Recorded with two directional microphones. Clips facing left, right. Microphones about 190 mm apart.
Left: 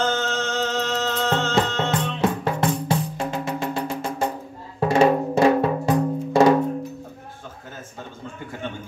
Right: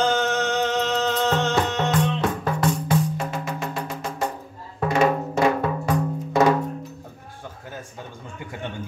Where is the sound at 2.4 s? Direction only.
30° left (ahead or behind).